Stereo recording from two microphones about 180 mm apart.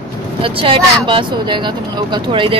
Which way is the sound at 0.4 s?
30° right (ahead or behind).